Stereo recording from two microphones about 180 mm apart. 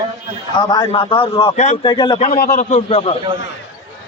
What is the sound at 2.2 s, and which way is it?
Speech, 50° left (ahead or behind).